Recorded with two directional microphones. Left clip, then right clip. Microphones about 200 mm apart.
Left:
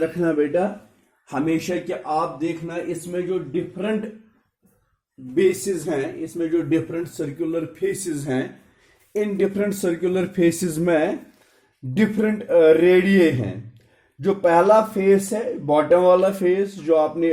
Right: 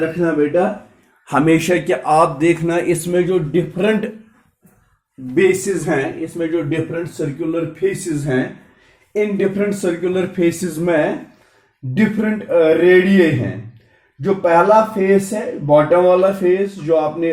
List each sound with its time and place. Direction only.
0.0 s speech: 40° left (ahead or behind)
1.3 s a man's voice: 5° right (ahead or behind); by 4.1 s 30° right (ahead or behind)
5.3 s speech: 15° left (ahead or behind)
6.0 s speech: 45° left (ahead or behind)